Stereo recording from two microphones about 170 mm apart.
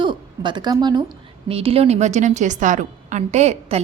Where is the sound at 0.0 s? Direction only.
30° right (ahead or behind).